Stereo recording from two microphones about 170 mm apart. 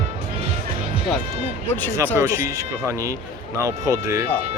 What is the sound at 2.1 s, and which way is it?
Speech, 15° right (ahead or behind).